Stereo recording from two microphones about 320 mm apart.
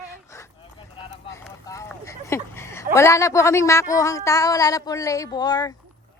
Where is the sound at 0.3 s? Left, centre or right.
Centre.